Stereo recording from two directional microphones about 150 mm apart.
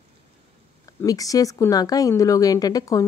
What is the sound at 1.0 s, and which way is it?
A woman's voice, 25° left (ahead or behind).